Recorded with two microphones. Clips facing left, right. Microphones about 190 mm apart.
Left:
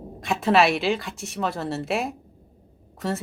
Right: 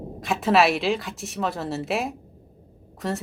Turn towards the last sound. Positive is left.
turn(degrees=0)  # may be behind; listen again after turning